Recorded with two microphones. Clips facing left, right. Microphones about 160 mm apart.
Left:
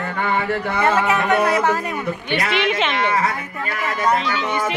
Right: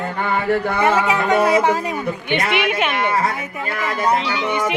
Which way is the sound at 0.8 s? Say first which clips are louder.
Even; 20° right (ahead or behind).